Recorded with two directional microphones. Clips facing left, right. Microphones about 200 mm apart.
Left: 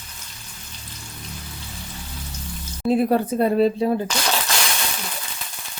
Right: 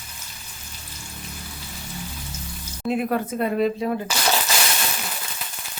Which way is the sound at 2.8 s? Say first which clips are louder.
Left 5 dB; 35° left (ahead or behind).